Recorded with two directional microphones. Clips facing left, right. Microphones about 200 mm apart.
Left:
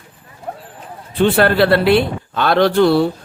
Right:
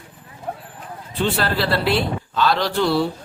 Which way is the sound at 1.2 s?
60° left (ahead or behind).